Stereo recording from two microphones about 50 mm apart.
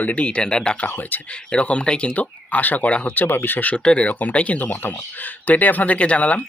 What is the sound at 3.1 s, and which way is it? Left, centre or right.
Speech, left.